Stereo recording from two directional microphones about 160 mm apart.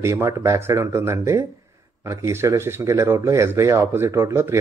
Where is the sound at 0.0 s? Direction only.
20° right (ahead or behind).